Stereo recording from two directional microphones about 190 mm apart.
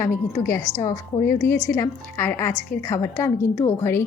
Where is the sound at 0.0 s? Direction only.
15° left (ahead or behind).